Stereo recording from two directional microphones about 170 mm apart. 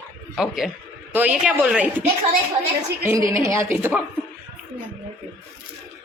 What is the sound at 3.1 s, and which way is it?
Speech, 20° right (ahead or behind).